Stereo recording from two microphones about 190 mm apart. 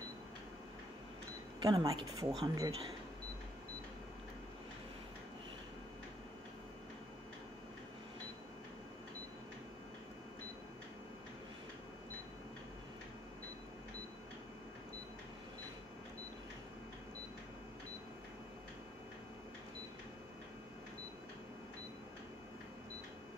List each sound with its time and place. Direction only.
1.6 s speech: 20° right (ahead or behind)